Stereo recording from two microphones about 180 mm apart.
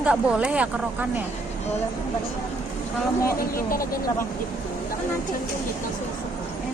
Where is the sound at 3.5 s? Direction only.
55° left (ahead or behind).